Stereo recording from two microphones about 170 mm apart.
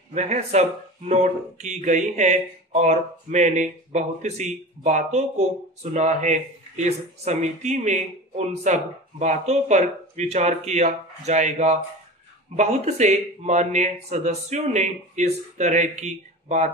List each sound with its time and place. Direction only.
0.1 s speech: 40° right (ahead or behind)